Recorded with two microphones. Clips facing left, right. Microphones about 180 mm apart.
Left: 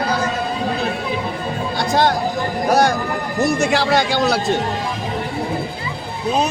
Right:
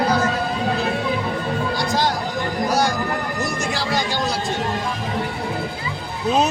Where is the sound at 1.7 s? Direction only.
60° left (ahead or behind).